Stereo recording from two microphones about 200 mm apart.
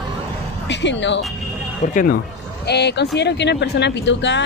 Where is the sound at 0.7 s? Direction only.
60° left (ahead or behind).